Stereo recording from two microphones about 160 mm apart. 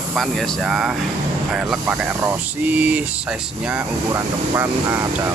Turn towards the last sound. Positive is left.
turn(degrees=-15)  # may be behind; listen again after turning